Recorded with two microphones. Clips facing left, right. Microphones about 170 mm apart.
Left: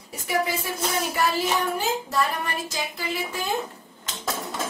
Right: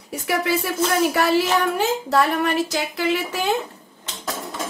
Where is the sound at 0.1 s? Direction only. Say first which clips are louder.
Right 4 dB; 70° right (ahead or behind).